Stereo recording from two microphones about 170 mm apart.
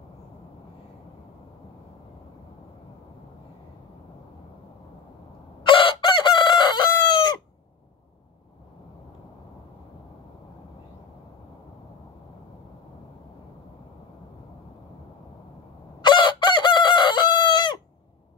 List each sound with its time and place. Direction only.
5.7 s chicken: 30° left (ahead or behind)
16.0 s chicken: 25° left (ahead or behind)